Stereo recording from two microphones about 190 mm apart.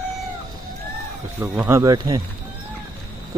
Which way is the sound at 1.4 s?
15° right (ahead or behind).